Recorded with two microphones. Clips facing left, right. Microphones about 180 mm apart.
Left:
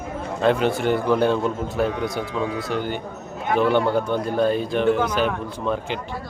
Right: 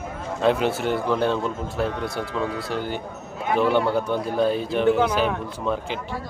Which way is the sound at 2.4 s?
20° left (ahead or behind).